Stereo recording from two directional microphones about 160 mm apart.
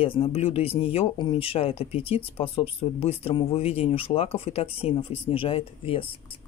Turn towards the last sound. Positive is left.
turn(degrees=35)  # may be behind; listen again after turning